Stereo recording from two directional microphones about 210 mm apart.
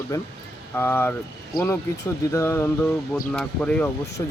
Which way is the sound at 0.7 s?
10° left (ahead or behind).